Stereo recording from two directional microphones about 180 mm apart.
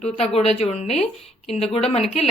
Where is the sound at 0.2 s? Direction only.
35° left (ahead or behind).